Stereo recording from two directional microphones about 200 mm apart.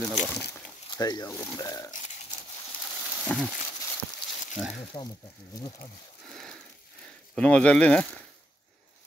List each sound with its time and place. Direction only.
0.0 s speech: centre (ahead or behind)
0.8 s speech: 20° left (ahead or behind)
3.3 s speech: centre (ahead or behind)
4.6 s speech: 5° right (ahead or behind)
4.9 s speech: 25° left (ahead or behind)
7.3 s speech: 5° left (ahead or behind)